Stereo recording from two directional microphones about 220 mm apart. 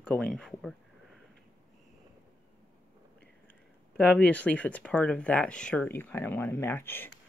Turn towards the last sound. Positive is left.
turn(degrees=10)  # may be behind; listen again after turning